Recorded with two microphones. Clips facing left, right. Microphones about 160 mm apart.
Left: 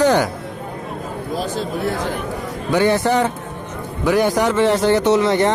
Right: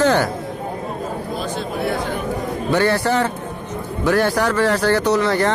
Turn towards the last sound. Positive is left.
turn(degrees=25)  # may be behind; listen again after turning